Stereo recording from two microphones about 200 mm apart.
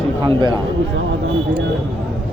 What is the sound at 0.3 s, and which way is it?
Cattle, 25° right (ahead or behind).